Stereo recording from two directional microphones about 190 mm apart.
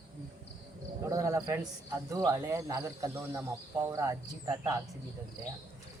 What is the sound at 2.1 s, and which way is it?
Speech, 15° right (ahead or behind).